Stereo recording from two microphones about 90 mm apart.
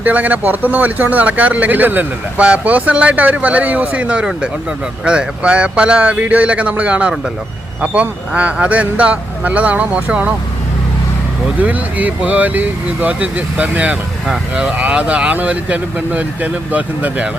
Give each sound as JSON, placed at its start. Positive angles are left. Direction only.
{"t": 0.0, "sound": "speech", "side_deg": -20}
{"t": 11.6, "sound": "speech", "side_deg": -15}